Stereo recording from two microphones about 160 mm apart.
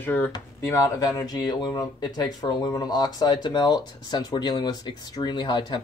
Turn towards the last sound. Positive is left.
turn(degrees=25)  # may be behind; listen again after turning